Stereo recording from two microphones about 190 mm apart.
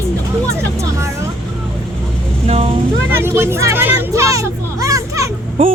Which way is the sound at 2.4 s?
35° right (ahead or behind).